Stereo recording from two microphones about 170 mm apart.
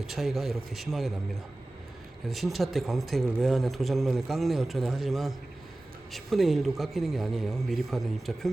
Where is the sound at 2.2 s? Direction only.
Centre (ahead or behind).